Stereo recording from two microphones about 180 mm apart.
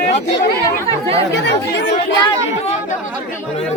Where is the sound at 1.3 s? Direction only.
75° left (ahead or behind).